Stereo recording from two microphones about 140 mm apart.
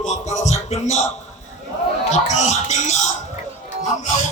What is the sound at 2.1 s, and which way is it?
Music, 55° left (ahead or behind).